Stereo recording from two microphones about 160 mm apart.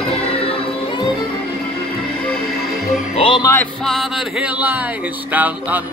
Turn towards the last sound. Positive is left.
turn(degrees=-10)  # may be behind; listen again after turning